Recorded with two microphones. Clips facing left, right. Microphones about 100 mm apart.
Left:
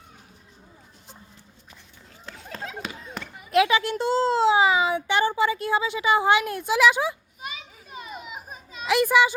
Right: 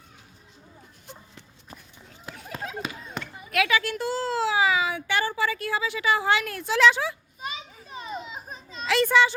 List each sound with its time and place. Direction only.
2.8 s a sound: centre (ahead or behind)
3.5 s a woman's voice: 25° left (ahead or behind)
7.4 s children playing: 30° right (ahead or behind)
8.2 s children playing: 10° left (ahead or behind)